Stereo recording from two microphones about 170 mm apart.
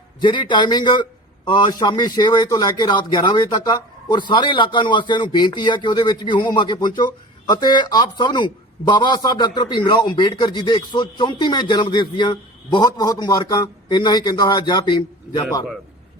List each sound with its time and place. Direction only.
0.2 s a man's voice: 25° left (ahead or behind)